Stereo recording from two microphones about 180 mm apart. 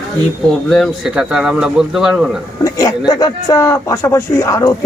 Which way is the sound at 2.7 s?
20° left (ahead or behind).